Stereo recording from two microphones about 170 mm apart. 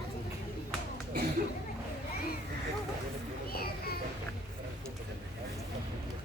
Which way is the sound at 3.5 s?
65° left (ahead or behind).